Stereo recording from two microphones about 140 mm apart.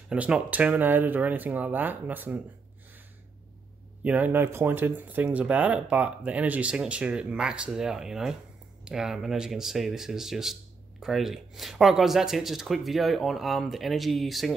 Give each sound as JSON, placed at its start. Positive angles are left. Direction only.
{"t": 0.1, "sound": "speech", "side_deg": -10}
{"t": 4.0, "sound": "speech", "side_deg": -10}